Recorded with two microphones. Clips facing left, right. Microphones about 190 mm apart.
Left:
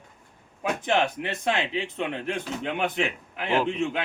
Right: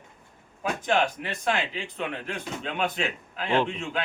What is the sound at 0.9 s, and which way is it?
A man's voice, 20° left (ahead or behind).